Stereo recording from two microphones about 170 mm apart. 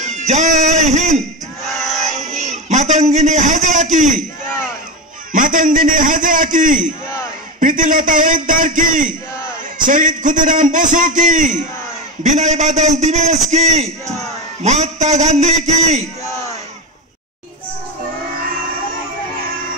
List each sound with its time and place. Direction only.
0.0 s music: 45° right (ahead or behind)
1.6 s choir: centre (ahead or behind)
2.0 s child singing: 45° right (ahead or behind)
2.7 s a sound: 45° right (ahead or behind)
5.3 s a sound: 50° right (ahead or behind)
9.8 s a man's voice: 50° right (ahead or behind)